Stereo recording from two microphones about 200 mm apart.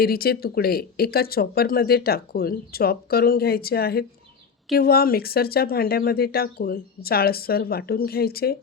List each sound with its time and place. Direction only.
0.0 s speech: 50° left (ahead or behind)